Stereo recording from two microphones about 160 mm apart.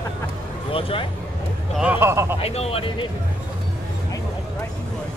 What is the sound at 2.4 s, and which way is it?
Speech, 40° left (ahead or behind).